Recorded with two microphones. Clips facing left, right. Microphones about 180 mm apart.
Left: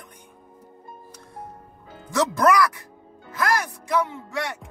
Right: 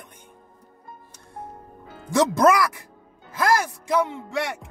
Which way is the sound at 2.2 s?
20° right (ahead or behind).